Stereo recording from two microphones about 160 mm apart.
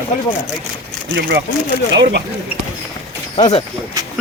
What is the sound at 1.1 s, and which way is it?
Speech, 90° right.